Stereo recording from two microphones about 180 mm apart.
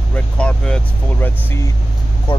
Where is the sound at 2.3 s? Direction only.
25° left (ahead or behind).